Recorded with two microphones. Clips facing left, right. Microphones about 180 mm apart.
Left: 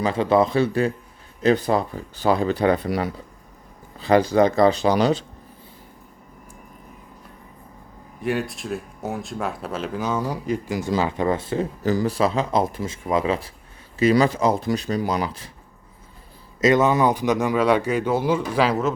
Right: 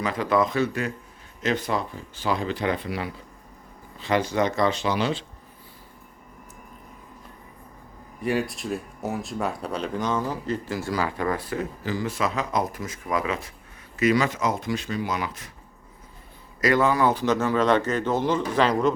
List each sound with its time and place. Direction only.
0.0 s speech: 30° left (ahead or behind)
8.2 s speech: centre (ahead or behind); by 11.7 s 25° left (ahead or behind)
11.8 s speech: 40° left (ahead or behind)
16.6 s speech: 20° left (ahead or behind); by 18.9 s 5° left (ahead or behind)